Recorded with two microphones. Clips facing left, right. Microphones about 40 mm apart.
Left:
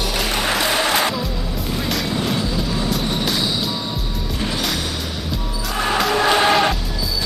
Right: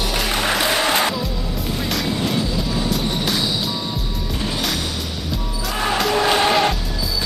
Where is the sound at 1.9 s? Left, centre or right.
Centre.